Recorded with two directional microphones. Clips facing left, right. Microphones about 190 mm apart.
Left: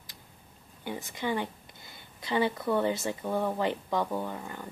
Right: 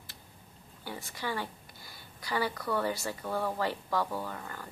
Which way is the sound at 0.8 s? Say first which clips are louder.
Left 5 dB; 20° left (ahead or behind).